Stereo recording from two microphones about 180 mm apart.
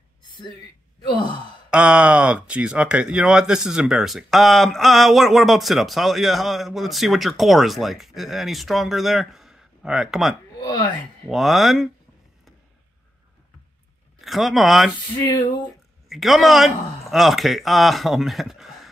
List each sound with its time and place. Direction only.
1.7 s speech: 5° right (ahead or behind)
14.2 s speech: centre (ahead or behind)
15.1 s a sound: 20° left (ahead or behind)
16.1 s speech: centre (ahead or behind)